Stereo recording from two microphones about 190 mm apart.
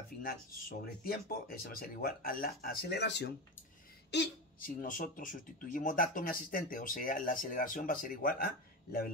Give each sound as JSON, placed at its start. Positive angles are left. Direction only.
{"t": 0.2, "sound": "speech", "side_deg": 50}